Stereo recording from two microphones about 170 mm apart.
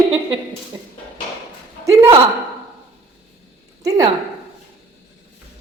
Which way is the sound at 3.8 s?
20° right (ahead or behind).